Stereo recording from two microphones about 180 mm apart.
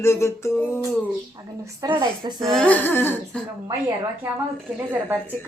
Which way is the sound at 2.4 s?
Centre (ahead or behind).